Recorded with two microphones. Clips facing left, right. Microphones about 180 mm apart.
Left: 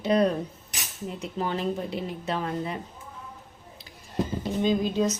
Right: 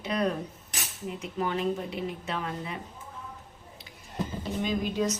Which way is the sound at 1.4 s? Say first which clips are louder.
Left 1 dB; 35° left (ahead or behind).